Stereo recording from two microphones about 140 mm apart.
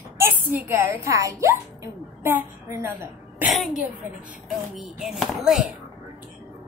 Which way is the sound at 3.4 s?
Centre (ahead or behind).